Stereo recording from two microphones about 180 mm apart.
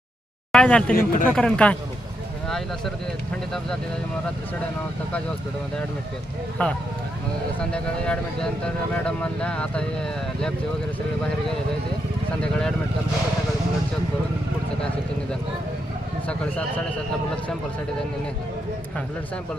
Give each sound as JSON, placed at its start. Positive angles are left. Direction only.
{"t": 0.5, "sound": "speech", "side_deg": 5}
{"t": 0.9, "sound": "speech", "side_deg": 50}
{"t": 1.4, "sound": "speech", "side_deg": 5}
{"t": 6.6, "sound": "speech", "side_deg": 10}
{"t": 12.4, "sound": "speech", "side_deg": 5}